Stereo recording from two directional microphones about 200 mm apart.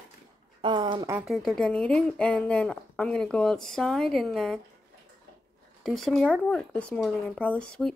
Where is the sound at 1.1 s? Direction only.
Centre (ahead or behind).